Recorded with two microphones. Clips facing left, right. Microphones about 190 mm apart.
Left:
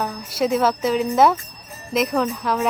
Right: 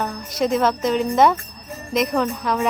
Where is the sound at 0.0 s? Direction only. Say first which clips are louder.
Even; 5° left (ahead or behind).